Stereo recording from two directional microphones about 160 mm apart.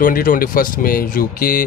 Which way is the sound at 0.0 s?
60° left (ahead or behind).